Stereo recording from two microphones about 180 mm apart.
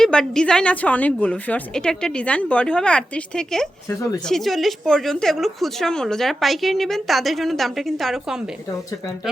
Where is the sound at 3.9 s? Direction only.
15° left (ahead or behind).